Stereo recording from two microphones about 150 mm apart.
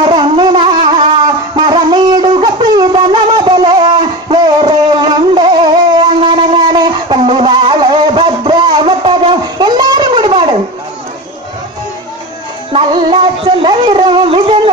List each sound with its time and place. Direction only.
0.0 s wind instrument: 35° right (ahead or behind)
1.7 s shofar: 30° right (ahead or behind)
12.7 s music: 35° right (ahead or behind)